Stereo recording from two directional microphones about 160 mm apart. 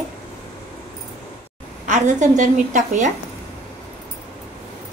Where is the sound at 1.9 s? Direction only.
50° right (ahead or behind).